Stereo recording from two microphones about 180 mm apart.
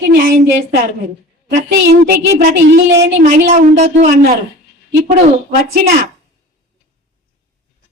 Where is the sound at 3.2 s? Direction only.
45° right (ahead or behind).